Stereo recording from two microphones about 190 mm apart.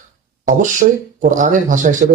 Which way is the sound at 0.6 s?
40° right (ahead or behind).